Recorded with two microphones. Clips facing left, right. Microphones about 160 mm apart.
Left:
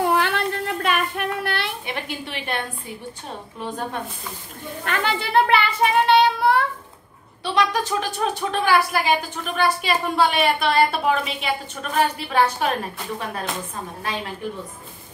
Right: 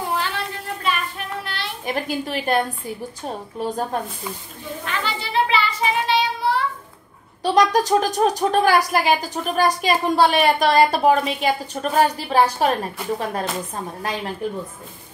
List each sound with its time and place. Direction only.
0.0 s child singing: 60° left (ahead or behind)
1.9 s a woman's voice: 40° right (ahead or behind)
3.6 s a woman's voice: 40° right (ahead or behind)
4.8 s child singing: 55° left (ahead or behind)
7.4 s a woman's voice: 40° right (ahead or behind)